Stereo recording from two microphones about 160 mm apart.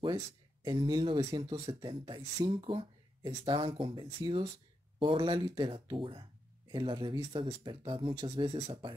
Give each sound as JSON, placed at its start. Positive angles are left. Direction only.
{"t": 0.7, "sound": "speech", "side_deg": -30}
{"t": 8.1, "sound": "speech", "side_deg": -25}